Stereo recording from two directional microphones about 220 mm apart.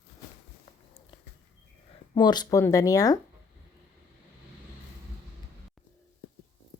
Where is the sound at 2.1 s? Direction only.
20° left (ahead or behind).